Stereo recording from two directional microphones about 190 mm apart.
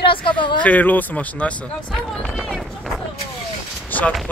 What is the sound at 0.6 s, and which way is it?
Speech, 10° left (ahead or behind).